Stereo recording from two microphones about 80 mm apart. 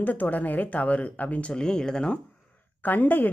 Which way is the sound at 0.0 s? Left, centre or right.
Left.